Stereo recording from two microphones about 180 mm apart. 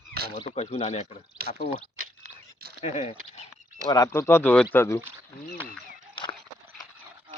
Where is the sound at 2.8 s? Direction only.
40° left (ahead or behind).